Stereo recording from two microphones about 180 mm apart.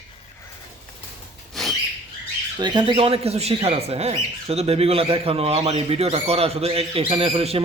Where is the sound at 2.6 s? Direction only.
25° right (ahead or behind).